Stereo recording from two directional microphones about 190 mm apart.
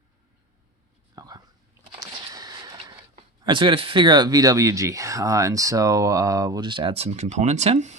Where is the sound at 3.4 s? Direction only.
25° right (ahead or behind).